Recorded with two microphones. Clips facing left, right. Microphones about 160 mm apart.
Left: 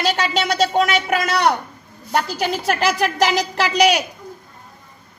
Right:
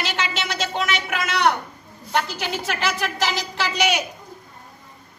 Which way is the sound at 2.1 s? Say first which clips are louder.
Left 4 dB; 40° left (ahead or behind).